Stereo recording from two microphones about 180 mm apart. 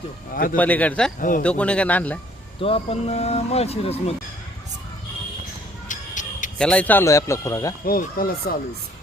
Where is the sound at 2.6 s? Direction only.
30° left (ahead or behind).